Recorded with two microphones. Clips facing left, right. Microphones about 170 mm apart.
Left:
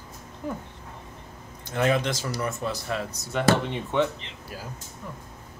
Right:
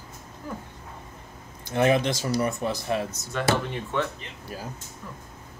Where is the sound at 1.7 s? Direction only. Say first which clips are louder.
Right 2 dB; 20° right (ahead or behind).